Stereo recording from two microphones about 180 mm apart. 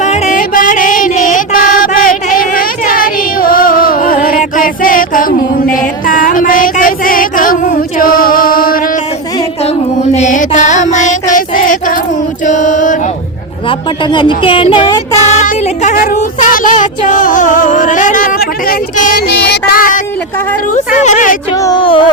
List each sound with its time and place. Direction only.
0.0 s music: 40° left (ahead or behind)
10.2 s music: 45° left (ahead or behind)
13.7 s speech: 25° left (ahead or behind)
15.3 s speech: 40° left (ahead or behind)
20.7 s speech: 40° left (ahead or behind)
21.5 s speech: 20° left (ahead or behind)